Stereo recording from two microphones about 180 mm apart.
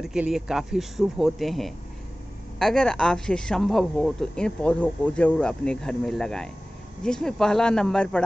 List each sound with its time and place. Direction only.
0.0 s speech: 5° right (ahead or behind)